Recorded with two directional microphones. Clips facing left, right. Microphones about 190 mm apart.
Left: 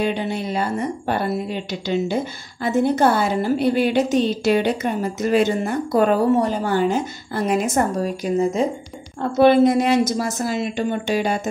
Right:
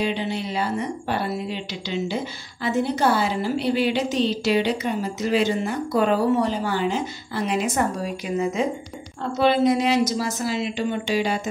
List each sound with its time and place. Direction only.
0.0 s speech: 50° left (ahead or behind)
9.4 s speech: 50° left (ahead or behind)